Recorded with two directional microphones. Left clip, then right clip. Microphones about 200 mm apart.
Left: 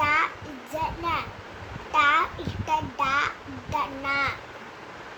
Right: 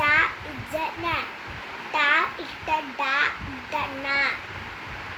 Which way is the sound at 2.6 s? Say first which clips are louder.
Even; 5° left (ahead or behind).